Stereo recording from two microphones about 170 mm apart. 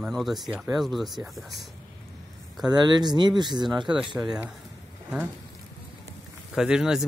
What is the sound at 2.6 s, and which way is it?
Speech, 25° right (ahead or behind).